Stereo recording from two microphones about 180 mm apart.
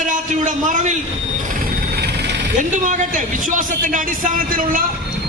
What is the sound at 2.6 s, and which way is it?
A man's voice, 45° right (ahead or behind).